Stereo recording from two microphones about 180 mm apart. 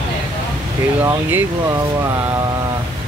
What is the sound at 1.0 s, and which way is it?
Speech, 10° right (ahead or behind).